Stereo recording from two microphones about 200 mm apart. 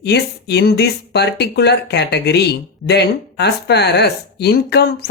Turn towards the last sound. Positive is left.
turn(degrees=55)  # may be behind; listen again after turning